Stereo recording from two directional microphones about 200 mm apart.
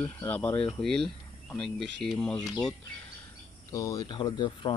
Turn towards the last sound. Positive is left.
turn(degrees=25)  # may be behind; listen again after turning